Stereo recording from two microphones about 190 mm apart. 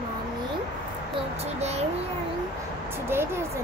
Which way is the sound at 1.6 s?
35° right (ahead or behind).